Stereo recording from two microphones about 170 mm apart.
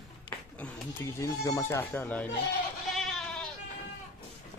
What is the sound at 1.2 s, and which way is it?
Speech, 20° left (ahead or behind).